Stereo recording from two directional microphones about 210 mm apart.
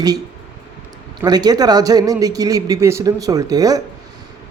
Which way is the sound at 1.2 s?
20° right (ahead or behind).